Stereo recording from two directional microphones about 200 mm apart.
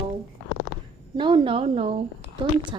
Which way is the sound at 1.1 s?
25° right (ahead or behind).